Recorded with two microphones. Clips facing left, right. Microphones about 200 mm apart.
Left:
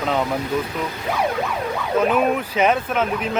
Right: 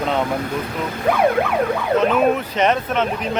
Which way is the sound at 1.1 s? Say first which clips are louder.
Right 7 dB; 55° right (ahead or behind).